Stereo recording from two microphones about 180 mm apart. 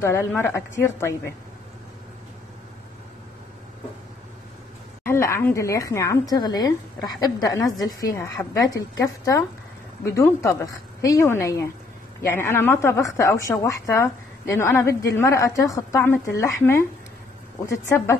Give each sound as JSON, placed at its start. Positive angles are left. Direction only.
{"t": 0.0, "sound": "a woman's voice", "side_deg": 15}
{"t": 5.0, "sound": "a woman's voice", "side_deg": 15}